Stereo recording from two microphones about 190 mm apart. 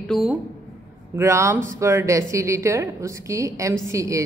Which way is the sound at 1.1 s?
15° right (ahead or behind).